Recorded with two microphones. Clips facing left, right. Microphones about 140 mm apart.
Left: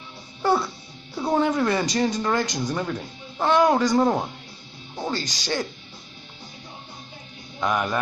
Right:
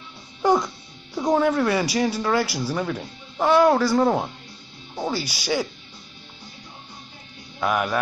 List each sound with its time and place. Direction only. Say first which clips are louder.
0.4 s music: right 2 dB; 15° right (ahead or behind)
1.3 s speech: right 2 dB; 10° left (ahead or behind)
1.6 s speech: right 1 dB; 10° right (ahead or behind)
7.6 s speech: right 1 dB; 5° right (ahead or behind)